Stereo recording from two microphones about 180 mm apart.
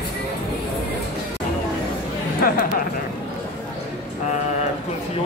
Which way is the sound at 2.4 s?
55° left (ahead or behind).